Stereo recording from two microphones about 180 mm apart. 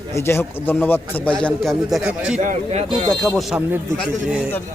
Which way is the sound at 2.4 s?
40° right (ahead or behind).